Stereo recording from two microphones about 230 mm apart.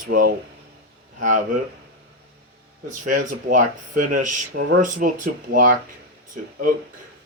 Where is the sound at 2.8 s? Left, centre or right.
Right.